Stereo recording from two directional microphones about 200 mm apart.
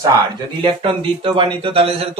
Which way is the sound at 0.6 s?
25° right (ahead or behind).